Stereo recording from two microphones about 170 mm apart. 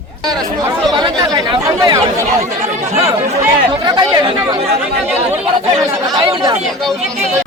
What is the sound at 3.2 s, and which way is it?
Speech, 40° right (ahead or behind).